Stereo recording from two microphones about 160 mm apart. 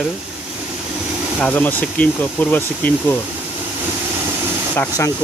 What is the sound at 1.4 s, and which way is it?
Speech, 10° left (ahead or behind).